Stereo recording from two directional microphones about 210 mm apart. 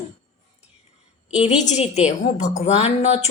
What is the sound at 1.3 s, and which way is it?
A woman's voice, 35° left (ahead or behind).